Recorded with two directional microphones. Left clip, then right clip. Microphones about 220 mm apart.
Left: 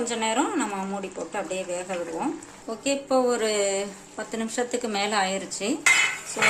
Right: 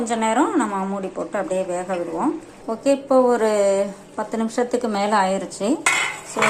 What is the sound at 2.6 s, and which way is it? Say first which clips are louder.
Speech: right 7 dB; 5° right (ahead or behind).